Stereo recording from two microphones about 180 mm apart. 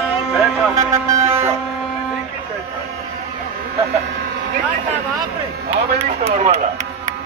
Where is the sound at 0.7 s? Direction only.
15° right (ahead or behind).